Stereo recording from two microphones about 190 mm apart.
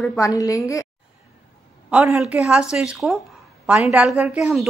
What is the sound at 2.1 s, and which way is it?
A woman's voice, 5° right (ahead or behind).